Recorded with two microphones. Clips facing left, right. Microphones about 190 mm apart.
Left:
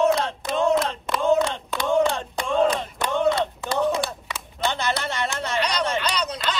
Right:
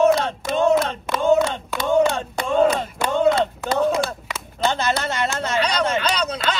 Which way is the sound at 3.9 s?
Centre (ahead or behind).